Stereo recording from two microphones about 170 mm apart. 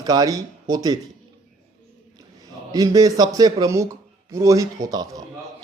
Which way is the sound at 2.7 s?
20° right (ahead or behind).